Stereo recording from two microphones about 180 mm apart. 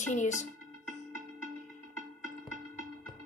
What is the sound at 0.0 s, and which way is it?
Speech, 40° left (ahead or behind).